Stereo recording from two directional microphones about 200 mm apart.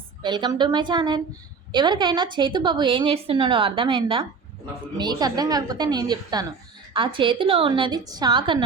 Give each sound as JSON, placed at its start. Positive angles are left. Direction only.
{"t": 0.2, "sound": "a woman's voice", "side_deg": -20}